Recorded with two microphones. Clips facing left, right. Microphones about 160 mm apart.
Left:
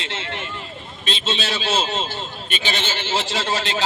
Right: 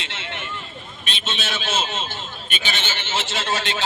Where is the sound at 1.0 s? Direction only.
35° left (ahead or behind).